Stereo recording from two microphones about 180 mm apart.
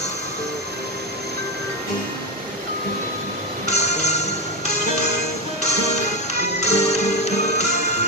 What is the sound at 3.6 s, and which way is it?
Music, 40° left (ahead or behind).